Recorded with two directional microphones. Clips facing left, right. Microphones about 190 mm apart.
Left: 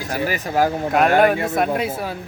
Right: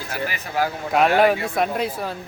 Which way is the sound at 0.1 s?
45° left (ahead or behind).